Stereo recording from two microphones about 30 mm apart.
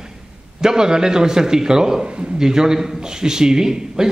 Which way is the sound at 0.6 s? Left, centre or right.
Right.